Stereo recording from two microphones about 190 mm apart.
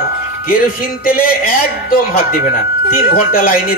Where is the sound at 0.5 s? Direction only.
50° left (ahead or behind).